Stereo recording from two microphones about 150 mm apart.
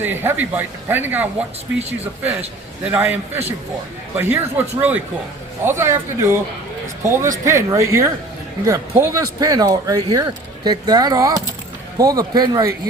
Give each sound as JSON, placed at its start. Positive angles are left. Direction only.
{"t": 0.0, "sound": "speech", "side_deg": -15}
{"t": 2.8, "sound": "a man's voice", "side_deg": -10}